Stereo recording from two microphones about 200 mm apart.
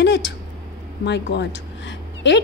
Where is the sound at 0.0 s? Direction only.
60° left (ahead or behind).